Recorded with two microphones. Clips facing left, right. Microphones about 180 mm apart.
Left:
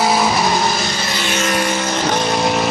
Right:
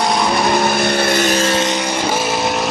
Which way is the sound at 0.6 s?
60° right (ahead or behind).